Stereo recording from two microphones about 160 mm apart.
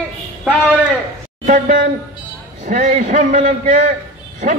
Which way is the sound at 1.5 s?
55° right (ahead or behind).